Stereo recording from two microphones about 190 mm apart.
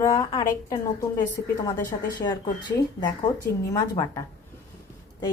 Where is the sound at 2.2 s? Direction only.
20° left (ahead or behind).